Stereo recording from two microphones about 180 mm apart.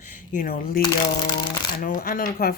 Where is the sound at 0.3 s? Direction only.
55° left (ahead or behind).